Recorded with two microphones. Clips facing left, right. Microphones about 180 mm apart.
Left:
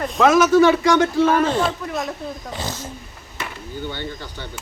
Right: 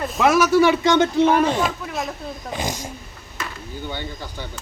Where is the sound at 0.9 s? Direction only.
20° right (ahead or behind).